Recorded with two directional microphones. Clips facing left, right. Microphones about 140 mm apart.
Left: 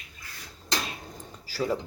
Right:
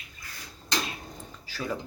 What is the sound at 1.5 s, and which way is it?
Speech, 30° left (ahead or behind).